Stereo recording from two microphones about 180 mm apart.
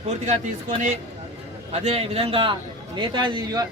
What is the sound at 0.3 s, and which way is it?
A man's voice, 40° right (ahead or behind).